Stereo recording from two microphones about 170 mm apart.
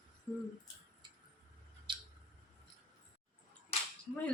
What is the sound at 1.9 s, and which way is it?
Scissors, 30° right (ahead or behind).